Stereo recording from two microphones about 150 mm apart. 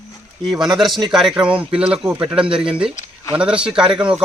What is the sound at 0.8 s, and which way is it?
A man's voice, centre (ahead or behind).